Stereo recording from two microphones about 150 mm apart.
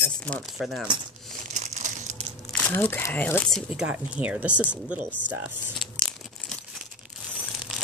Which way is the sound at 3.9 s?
10° right (ahead or behind).